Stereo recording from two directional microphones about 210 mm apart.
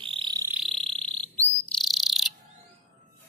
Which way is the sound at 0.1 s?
20° right (ahead or behind).